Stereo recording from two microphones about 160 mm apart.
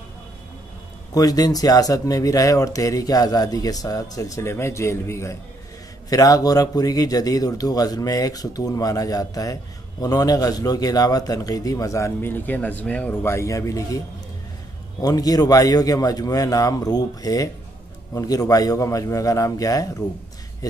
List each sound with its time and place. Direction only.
1.1 s a man's voice: 25° left (ahead or behind)